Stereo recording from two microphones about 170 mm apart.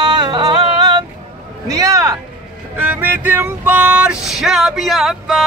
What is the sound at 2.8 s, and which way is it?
Male singing, 10° right (ahead or behind).